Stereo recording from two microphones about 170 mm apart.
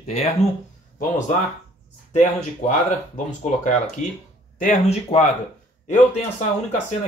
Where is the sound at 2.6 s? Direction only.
45° left (ahead or behind).